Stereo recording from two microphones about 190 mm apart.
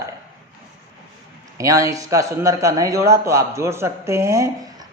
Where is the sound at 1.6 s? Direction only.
15° right (ahead or behind).